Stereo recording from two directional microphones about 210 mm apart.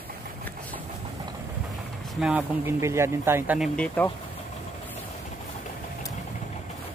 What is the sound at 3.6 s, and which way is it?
Speech, 5° left (ahead or behind).